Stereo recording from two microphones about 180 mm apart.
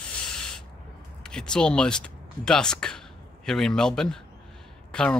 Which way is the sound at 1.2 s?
5° left (ahead or behind).